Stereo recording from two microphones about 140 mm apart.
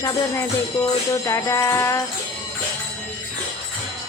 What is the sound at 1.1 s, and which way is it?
Speech, 20° left (ahead or behind).